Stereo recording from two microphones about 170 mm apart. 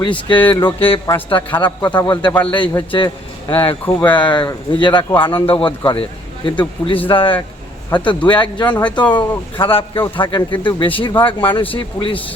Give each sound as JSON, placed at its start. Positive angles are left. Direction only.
{"t": 0.0, "sound": "a man's voice", "side_deg": 30}
{"t": 1.4, "sound": "a man's voice", "side_deg": 10}
{"t": 1.6, "sound": "a man's voice", "side_deg": 25}